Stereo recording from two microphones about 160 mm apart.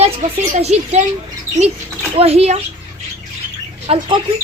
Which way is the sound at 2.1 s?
40° right (ahead or behind).